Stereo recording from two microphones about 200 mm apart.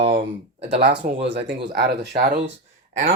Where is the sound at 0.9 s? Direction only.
60° right (ahead or behind).